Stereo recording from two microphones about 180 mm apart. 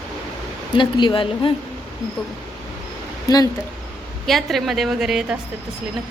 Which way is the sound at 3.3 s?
20° left (ahead or behind).